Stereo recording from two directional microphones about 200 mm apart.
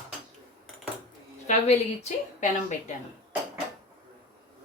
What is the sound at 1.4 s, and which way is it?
Speech, 35° left (ahead or behind).